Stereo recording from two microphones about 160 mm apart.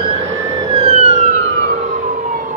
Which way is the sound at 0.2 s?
20° right (ahead or behind).